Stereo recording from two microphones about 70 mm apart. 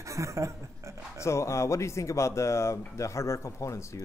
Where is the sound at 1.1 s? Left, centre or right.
Left.